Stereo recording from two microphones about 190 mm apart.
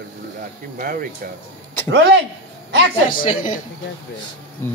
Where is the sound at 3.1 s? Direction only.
45° left (ahead or behind).